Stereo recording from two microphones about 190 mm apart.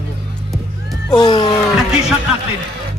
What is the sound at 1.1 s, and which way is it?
Speech, 20° left (ahead or behind).